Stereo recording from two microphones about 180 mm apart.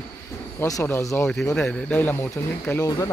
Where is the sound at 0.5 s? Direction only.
15° left (ahead or behind).